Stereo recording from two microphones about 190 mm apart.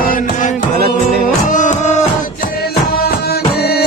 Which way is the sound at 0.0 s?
45° left (ahead or behind).